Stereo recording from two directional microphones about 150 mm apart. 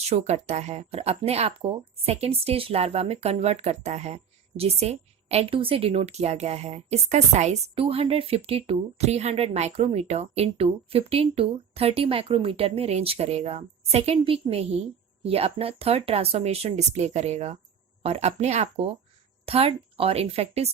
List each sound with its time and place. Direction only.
0.0 s speech: 45° right (ahead or behind)